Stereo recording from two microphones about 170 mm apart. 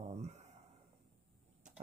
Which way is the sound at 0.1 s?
40° right (ahead or behind).